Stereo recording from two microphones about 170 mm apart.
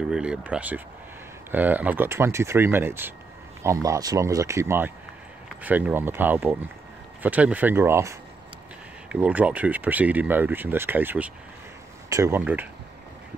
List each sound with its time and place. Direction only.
0.1 s speech: 5° right (ahead or behind)